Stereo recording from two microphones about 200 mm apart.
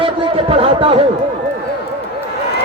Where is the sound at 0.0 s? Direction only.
25° right (ahead or behind).